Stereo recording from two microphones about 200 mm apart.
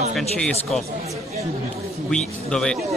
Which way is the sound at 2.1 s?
5° left (ahead or behind).